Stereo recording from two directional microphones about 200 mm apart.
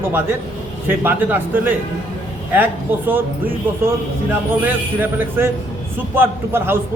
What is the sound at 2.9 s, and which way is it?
Speech, 10° right (ahead or behind).